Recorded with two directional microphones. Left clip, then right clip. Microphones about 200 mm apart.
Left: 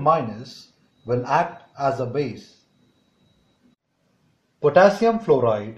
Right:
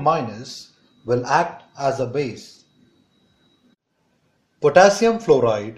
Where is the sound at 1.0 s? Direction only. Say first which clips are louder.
Right 2 dB; 25° right (ahead or behind).